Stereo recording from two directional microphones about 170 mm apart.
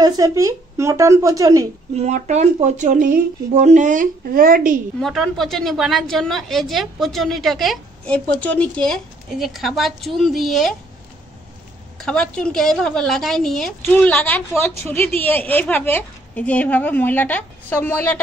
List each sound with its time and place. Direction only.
0.0 s a woman's voice: 20° right (ahead or behind)
2.0 s speech: 45° right (ahead or behind)
5.0 s a woman's voice: centre (ahead or behind)
12.0 s a woman's voice: 5° left (ahead or behind)